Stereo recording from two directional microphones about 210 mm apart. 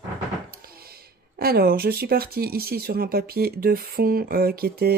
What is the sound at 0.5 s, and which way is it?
Speech, 45° right (ahead or behind).